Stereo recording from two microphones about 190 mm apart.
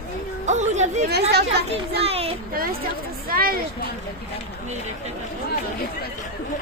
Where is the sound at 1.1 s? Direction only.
60° right (ahead or behind).